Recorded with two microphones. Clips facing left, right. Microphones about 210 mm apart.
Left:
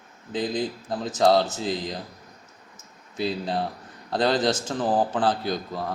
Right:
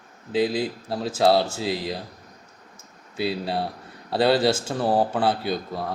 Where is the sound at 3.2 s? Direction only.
10° right (ahead or behind).